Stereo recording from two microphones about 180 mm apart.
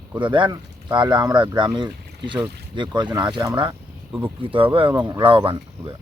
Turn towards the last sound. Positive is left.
turn(degrees=-30)  # may be behind; listen again after turning